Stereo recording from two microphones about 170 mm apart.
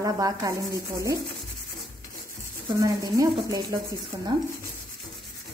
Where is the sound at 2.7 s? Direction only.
20° right (ahead or behind).